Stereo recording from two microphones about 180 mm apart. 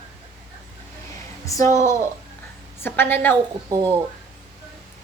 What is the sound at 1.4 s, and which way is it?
Speech, 15° left (ahead or behind).